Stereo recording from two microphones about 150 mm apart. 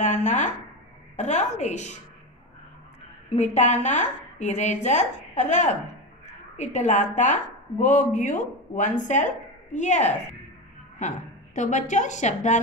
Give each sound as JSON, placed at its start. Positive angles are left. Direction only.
{"t": 0.0, "sound": "a sound", "side_deg": 50}
{"t": 1.1, "sound": "a woman's voice", "side_deg": 50}
{"t": 3.3, "sound": "a woman's voice", "side_deg": 50}